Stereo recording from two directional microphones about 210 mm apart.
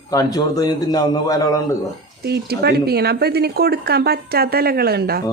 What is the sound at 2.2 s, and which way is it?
Speech, 50° right (ahead or behind).